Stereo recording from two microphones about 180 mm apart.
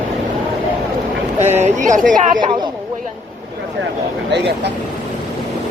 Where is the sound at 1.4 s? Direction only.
40° right (ahead or behind).